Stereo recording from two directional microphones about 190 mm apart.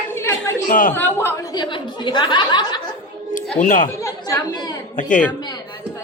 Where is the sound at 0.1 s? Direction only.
15° left (ahead or behind).